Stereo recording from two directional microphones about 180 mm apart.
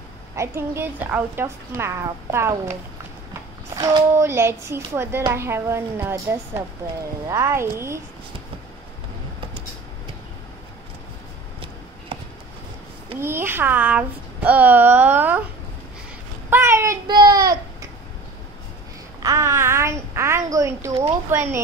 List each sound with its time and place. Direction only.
0.4 s a woman's voice: 15° right (ahead or behind)
12.1 s a sound: 30° right (ahead or behind)
13.2 s a woman's voice: 10° right (ahead or behind)
16.4 s child singing: 15° right (ahead or behind)
19.2 s a child's voice: 15° right (ahead or behind)